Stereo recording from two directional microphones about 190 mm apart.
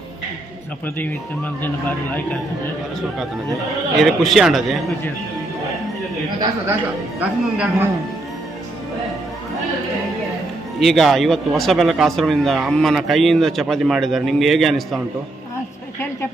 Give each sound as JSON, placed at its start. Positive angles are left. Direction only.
{"t": 4.0, "sound": "speech", "side_deg": 0}
{"t": 7.2, "sound": "speech", "side_deg": -10}
{"t": 10.8, "sound": "speech", "side_deg": 0}